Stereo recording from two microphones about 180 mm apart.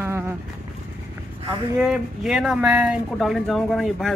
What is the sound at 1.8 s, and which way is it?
Speech, centre (ahead or behind).